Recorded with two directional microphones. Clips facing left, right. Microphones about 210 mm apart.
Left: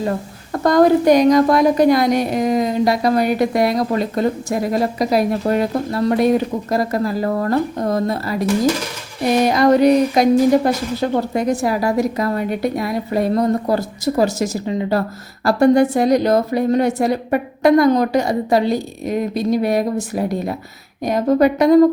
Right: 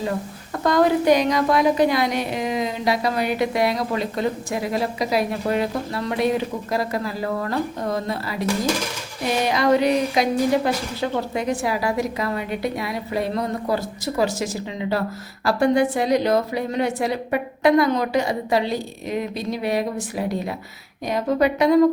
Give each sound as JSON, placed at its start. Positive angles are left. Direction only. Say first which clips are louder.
{"t": 0.5, "sound": "a woman's voice", "louder": "left 5 dB", "side_deg": 45}
{"t": 9.5, "sound": "a woman's voice", "louder": "left 5 dB", "side_deg": 45}